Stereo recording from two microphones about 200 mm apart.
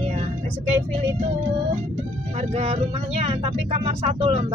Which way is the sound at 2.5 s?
30° right (ahead or behind).